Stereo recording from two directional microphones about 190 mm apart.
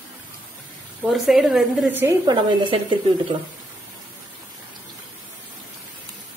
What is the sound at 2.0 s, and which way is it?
Speech, 20° right (ahead or behind).